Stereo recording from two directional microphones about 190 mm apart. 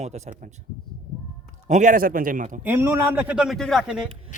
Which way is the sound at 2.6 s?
10° right (ahead or behind).